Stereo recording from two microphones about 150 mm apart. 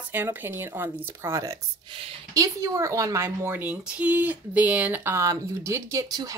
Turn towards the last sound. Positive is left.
turn(degrees=-25)  # may be behind; listen again after turning